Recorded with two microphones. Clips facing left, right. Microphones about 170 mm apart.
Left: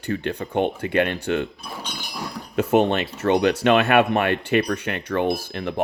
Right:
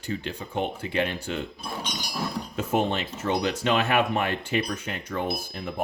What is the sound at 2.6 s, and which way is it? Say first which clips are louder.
Speech: left 7 dB; 70° left (ahead or behind).